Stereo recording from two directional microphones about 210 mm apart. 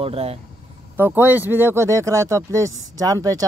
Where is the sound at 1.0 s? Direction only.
10° right (ahead or behind).